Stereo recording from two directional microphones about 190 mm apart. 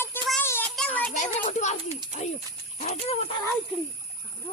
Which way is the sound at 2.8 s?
35° left (ahead or behind).